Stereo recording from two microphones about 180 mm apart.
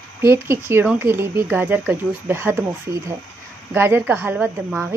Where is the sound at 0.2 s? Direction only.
15° right (ahead or behind).